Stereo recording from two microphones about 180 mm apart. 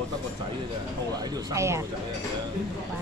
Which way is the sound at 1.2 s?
20° right (ahead or behind).